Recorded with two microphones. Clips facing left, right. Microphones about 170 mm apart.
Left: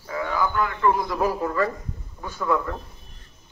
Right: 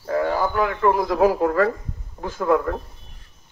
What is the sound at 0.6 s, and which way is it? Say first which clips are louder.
Speech: right 3 dB; 60° right (ahead or behind).